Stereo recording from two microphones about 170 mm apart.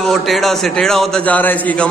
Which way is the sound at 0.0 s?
Centre (ahead or behind).